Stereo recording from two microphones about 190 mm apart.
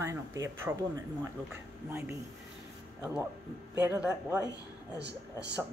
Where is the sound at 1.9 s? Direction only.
15° right (ahead or behind).